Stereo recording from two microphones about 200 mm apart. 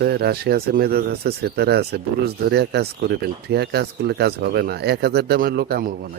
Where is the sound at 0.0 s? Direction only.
55° right (ahead or behind).